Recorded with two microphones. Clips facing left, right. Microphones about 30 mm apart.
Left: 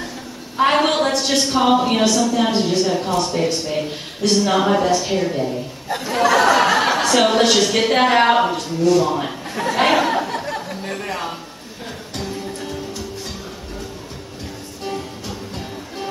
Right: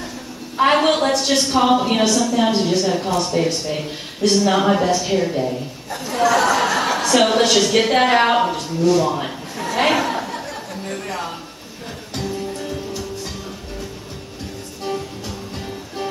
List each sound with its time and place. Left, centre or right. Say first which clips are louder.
0.6 s a woman's voice: right 1 dB; centre
5.9 s chuckle: left 1 dB; left
7.1 s a woman's voice: right 2 dB; centre
9.9 s a sound: left 3 dB; centre
10.4 s chatter: left 3 dB; centre
12.5 s music: right 1 dB; centre
14.8 s music: right 2 dB; centre